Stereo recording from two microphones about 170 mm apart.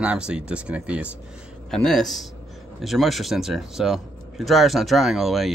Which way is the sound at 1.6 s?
5° left (ahead or behind).